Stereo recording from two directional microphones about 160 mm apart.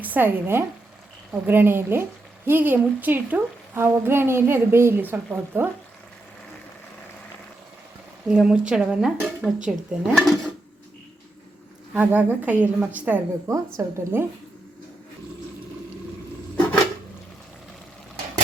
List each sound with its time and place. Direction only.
0.0 s speech: 10° right (ahead or behind)
8.3 s speech: 5° right (ahead or behind)
11.9 s speech: 10° right (ahead or behind)